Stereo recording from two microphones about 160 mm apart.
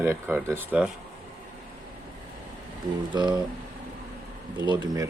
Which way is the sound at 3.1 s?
25° right (ahead or behind).